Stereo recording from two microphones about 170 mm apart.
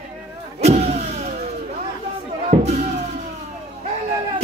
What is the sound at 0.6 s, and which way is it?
Vehicle, 40° right (ahead or behind).